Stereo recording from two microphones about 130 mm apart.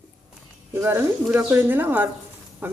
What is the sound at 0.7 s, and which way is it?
Speech, 20° right (ahead or behind).